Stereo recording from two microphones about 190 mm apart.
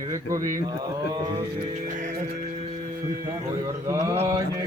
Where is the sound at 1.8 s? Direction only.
40° right (ahead or behind).